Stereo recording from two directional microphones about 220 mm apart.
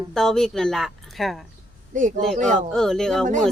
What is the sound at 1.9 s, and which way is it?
Speech, 35° right (ahead or behind).